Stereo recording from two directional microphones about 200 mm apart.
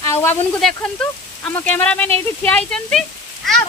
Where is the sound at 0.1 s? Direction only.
10° left (ahead or behind).